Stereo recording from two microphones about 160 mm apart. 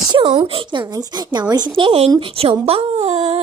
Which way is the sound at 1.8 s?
35° right (ahead or behind).